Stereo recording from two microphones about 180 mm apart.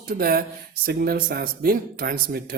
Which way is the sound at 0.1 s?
55° right (ahead or behind).